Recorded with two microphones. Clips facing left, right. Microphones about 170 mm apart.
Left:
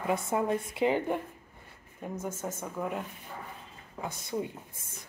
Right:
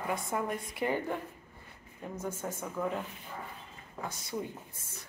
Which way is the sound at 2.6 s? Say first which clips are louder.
Right 1 dB; 10° left (ahead or behind).